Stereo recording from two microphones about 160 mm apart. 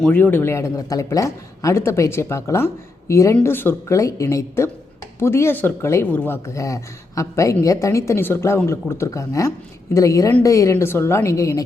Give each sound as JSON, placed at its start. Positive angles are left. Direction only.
{"t": 0.0, "sound": "a woman's voice", "side_deg": 10}